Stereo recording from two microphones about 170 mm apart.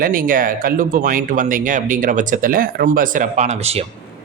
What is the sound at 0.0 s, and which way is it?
A man's voice, 55° right (ahead or behind).